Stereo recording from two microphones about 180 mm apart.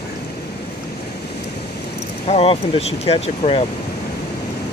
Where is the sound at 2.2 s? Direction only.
35° left (ahead or behind).